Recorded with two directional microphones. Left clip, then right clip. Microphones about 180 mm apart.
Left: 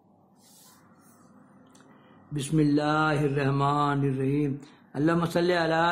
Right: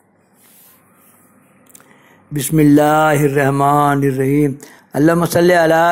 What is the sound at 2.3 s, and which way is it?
Mantra, 35° right (ahead or behind).